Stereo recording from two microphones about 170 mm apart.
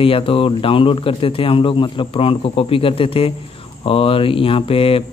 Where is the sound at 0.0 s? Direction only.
35° left (ahead or behind).